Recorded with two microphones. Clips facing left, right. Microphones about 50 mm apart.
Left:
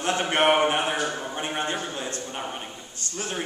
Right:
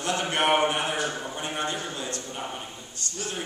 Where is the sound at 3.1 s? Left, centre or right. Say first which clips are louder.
Left 3 dB; left.